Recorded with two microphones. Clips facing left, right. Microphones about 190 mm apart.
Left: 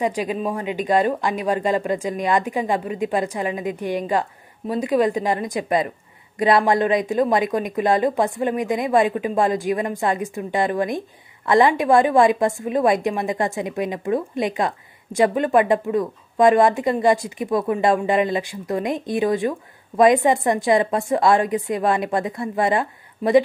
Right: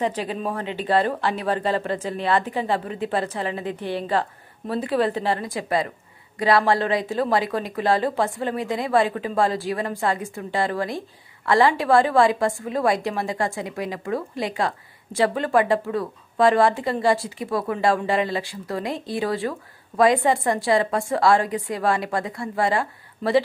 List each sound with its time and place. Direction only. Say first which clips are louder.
0.0 s speech: left 3 dB; 10° left (ahead or behind)